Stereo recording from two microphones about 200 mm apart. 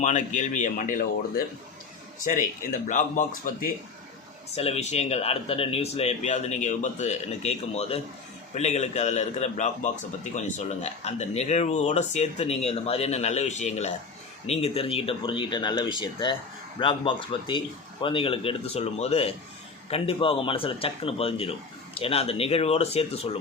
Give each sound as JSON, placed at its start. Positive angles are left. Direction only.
{"t": 0.0, "sound": "speech", "side_deg": 35}
{"t": 2.8, "sound": "speech", "side_deg": 40}
{"t": 4.5, "sound": "speech", "side_deg": 30}